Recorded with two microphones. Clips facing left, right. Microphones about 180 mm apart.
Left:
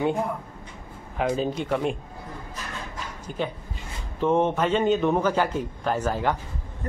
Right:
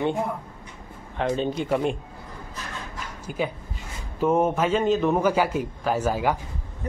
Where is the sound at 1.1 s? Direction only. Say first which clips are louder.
Even; 5° left (ahead or behind).